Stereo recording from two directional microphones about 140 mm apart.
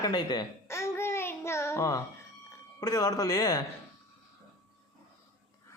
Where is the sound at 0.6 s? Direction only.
20° left (ahead or behind).